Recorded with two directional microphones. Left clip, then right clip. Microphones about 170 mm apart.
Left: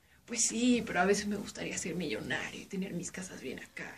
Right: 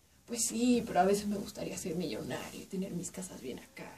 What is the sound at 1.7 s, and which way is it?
Speech, 30° right (ahead or behind).